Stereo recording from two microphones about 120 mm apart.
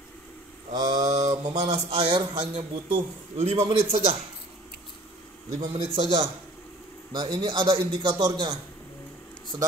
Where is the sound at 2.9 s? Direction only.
65° right (ahead or behind).